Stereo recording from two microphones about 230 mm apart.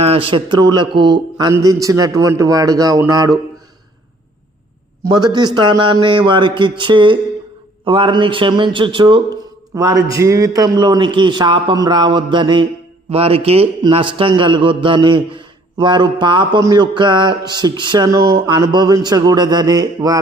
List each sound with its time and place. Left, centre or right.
0.0 s a man's voice: right
5.0 s a man's voice: centre